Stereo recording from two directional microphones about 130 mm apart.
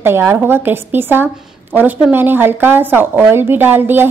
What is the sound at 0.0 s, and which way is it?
A woman's voice, 20° right (ahead or behind).